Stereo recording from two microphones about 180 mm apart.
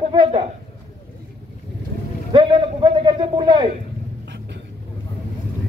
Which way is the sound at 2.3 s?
25° right (ahead or behind).